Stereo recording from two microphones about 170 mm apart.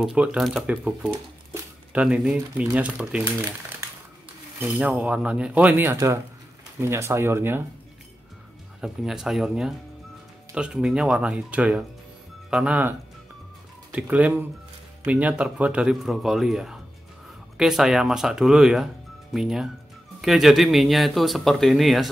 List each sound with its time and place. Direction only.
0.0 s speech: 5° right (ahead or behind)
4.6 s speech: 10° right (ahead or behind)
8.8 s speech: 5° right (ahead or behind)
13.9 s speech: 10° right (ahead or behind)